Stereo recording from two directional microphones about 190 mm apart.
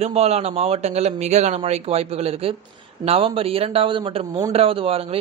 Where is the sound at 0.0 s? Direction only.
35° right (ahead or behind).